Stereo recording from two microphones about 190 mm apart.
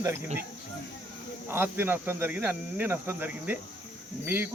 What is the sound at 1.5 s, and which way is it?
Speech, 10° right (ahead or behind).